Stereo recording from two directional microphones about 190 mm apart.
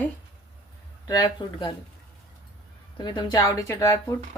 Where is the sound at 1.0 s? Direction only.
20° left (ahead or behind).